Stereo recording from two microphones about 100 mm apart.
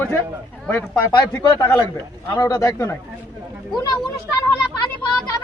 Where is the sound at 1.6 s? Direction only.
30° left (ahead or behind).